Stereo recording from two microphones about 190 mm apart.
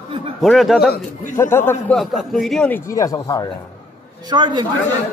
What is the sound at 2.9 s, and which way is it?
Speech, 20° left (ahead or behind).